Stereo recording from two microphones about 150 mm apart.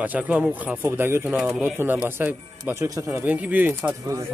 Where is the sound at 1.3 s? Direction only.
Centre (ahead or behind).